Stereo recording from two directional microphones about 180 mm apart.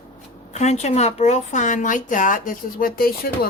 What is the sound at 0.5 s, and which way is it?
Speech, 40° left (ahead or behind).